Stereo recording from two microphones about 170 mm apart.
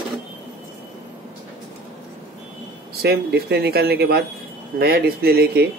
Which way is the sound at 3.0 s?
70° right (ahead or behind).